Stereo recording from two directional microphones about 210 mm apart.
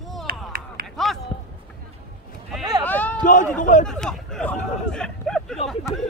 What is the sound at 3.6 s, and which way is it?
Speech, 35° left (ahead or behind).